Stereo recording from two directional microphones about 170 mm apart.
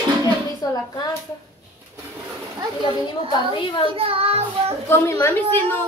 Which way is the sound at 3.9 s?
35° right (ahead or behind).